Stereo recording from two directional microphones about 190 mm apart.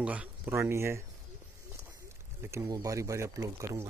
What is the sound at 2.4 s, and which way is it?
Speech, 15° right (ahead or behind).